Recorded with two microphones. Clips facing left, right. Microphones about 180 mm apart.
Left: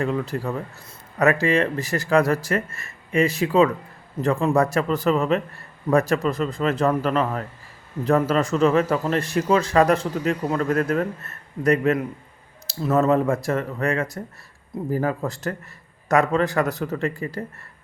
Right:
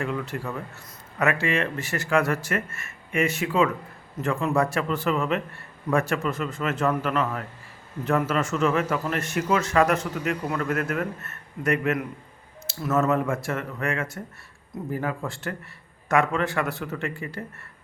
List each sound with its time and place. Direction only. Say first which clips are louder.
0.0 s speech: left 5 dB; 35° left (ahead or behind)